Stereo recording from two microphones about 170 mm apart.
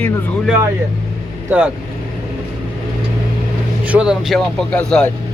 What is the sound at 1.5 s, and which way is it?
Speech, 10° right (ahead or behind).